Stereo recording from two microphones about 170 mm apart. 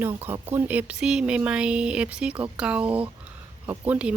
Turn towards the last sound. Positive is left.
turn(degrees=-10)  # may be behind; listen again after turning